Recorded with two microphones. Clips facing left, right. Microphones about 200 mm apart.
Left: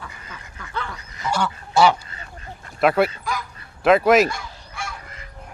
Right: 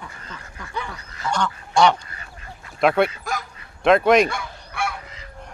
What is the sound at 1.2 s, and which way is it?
Goose, 10° left (ahead or behind).